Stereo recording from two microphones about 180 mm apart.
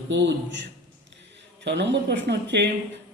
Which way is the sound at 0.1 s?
75° right (ahead or behind).